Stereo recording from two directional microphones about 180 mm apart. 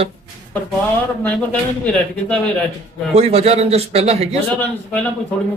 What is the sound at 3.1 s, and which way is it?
Speech, 35° right (ahead or behind).